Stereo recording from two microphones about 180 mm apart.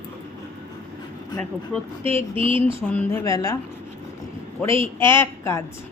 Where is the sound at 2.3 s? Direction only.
30° right (ahead or behind).